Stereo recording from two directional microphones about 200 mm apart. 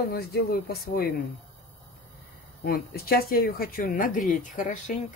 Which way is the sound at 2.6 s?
50° left (ahead or behind).